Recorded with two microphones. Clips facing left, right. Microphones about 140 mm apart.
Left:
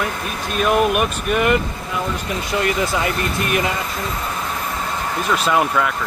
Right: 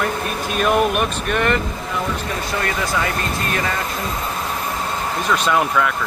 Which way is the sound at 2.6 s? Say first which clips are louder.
Left 3 dB; 20° left (ahead or behind).